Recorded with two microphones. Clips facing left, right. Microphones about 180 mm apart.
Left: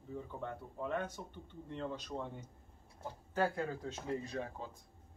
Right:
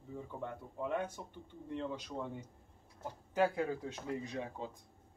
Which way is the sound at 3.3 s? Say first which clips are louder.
Right 3 dB; 15° right (ahead or behind).